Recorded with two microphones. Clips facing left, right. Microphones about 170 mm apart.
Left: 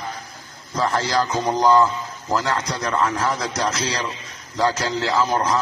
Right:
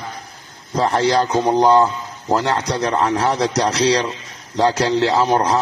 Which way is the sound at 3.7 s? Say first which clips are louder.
Right 10 dB; 75° right (ahead or behind).